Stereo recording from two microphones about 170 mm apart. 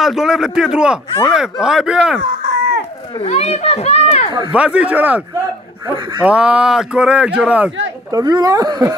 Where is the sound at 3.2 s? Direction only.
40° left (ahead or behind).